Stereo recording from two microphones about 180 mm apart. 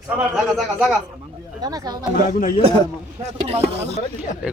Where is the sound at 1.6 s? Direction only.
20° right (ahead or behind).